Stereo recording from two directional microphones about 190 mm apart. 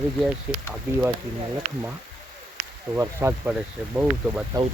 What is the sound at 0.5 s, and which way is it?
Speech, 5° right (ahead or behind).